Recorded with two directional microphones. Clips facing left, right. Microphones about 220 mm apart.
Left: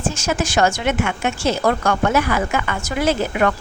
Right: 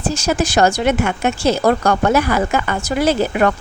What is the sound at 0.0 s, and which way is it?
A woman's voice, 35° right (ahead or behind).